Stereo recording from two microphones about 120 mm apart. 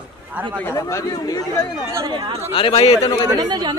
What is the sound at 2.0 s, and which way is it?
Speech, 45° right (ahead or behind).